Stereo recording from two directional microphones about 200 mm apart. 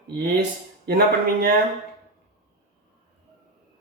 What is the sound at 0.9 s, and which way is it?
Speech, 50° right (ahead or behind).